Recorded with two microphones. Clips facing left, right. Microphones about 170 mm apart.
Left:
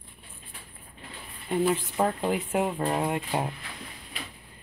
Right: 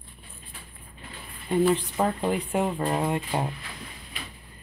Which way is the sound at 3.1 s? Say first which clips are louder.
Right 1 dB; 15° left (ahead or behind).